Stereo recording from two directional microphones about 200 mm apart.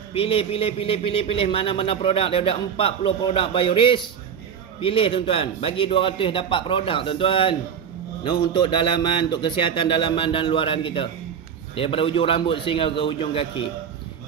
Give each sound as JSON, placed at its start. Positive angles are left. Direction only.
{"t": 0.1, "sound": "a man's voice", "side_deg": 30}